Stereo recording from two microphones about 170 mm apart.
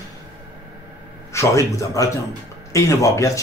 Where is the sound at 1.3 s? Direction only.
20° left (ahead or behind).